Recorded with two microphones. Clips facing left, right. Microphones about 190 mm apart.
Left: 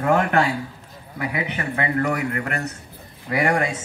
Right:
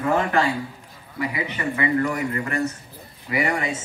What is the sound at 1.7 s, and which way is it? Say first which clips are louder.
A man's voice: even; 65° left (ahead or behind).